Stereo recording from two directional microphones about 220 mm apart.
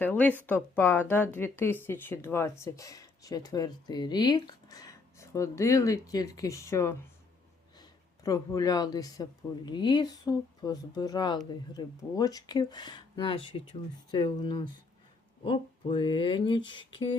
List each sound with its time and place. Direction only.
0.0 s speech: 5° left (ahead or behind)